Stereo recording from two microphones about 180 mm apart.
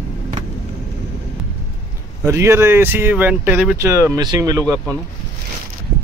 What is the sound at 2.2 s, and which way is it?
Speech, 15° right (ahead or behind).